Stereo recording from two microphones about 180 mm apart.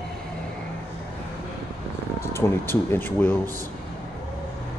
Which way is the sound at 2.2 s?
15° left (ahead or behind).